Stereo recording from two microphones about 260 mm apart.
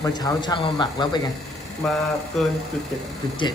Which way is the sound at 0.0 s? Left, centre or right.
Centre.